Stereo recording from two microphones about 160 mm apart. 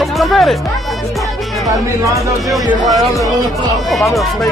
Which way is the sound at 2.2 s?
Centre (ahead or behind).